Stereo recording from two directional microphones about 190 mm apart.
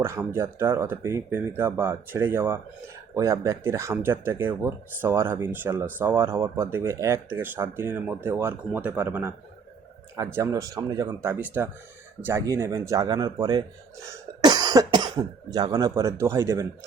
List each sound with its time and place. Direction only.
0.0 s speech: 10° right (ahead or behind)
10.3 s speech: 15° right (ahead or behind)